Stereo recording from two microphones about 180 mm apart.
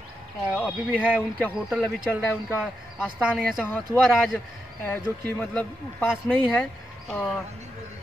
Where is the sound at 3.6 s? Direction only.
10° left (ahead or behind).